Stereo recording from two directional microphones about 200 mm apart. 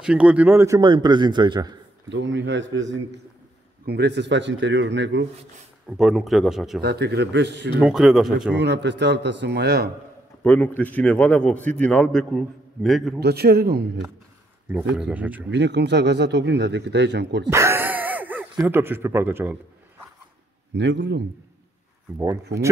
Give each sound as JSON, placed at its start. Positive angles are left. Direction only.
{"t": 0.0, "sound": "a man's voice", "side_deg": -5}
{"t": 2.0, "sound": "a man's voice", "side_deg": -70}
{"t": 3.8, "sound": "a man's voice", "side_deg": -55}
{"t": 5.9, "sound": "a man's voice", "side_deg": 0}
{"t": 6.8, "sound": "a man's voice", "side_deg": -55}
{"t": 7.8, "sound": "a man's voice", "side_deg": 0}
{"t": 8.5, "sound": "a man's voice", "side_deg": -60}
{"t": 10.4, "sound": "a man's voice", "side_deg": 10}
{"t": 13.2, "sound": "a man's voice", "side_deg": -55}
{"t": 14.7, "sound": "speech", "side_deg": -5}
{"t": 15.5, "sound": "a man's voice", "side_deg": -60}
{"t": 17.5, "sound": "speech", "side_deg": -15}
{"t": 20.7, "sound": "a man's voice", "side_deg": -60}
{"t": 22.5, "sound": "a man's voice", "side_deg": -55}